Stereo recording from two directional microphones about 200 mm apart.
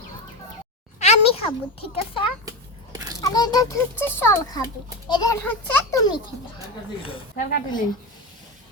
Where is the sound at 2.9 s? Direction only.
20° right (ahead or behind).